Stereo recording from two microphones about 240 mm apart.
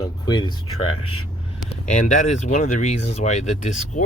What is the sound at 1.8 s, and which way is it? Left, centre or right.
Speech, left.